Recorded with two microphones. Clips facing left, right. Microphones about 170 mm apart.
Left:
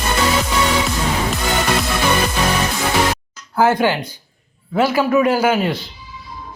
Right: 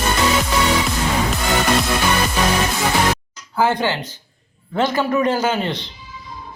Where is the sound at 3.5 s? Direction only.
10° left (ahead or behind).